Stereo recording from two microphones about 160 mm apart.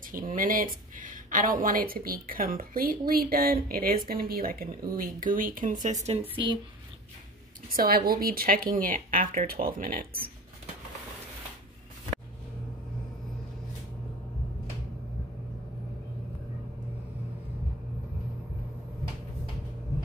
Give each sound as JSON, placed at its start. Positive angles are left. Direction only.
{"t": 0.3, "sound": "speech", "side_deg": -60}
{"t": 6.3, "sound": "speech", "side_deg": -30}
{"t": 7.7, "sound": "a woman's voice", "side_deg": -70}